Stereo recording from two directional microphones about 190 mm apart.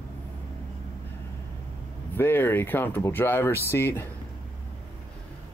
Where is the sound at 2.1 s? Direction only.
10° left (ahead or behind).